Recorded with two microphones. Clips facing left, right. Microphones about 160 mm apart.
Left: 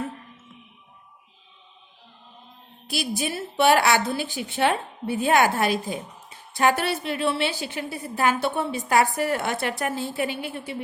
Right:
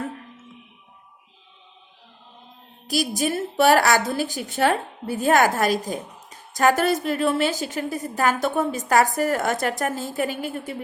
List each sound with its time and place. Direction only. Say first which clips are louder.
2.8 s a woman's voice: right 4 dB; 45° right (ahead or behind)